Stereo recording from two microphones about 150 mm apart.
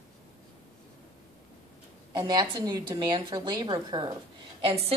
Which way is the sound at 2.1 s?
30° right (ahead or behind).